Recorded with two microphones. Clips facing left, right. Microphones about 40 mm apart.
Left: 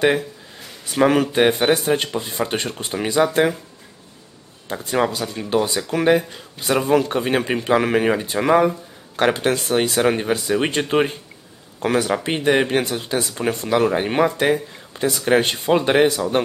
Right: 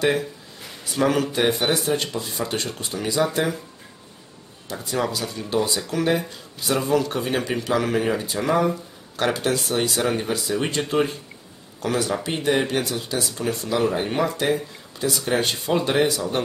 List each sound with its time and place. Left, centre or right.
0.9 s speech: left
4.8 s speech: left